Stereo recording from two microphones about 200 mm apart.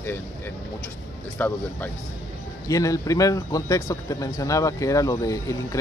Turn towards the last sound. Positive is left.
turn(degrees=15)  # may be behind; listen again after turning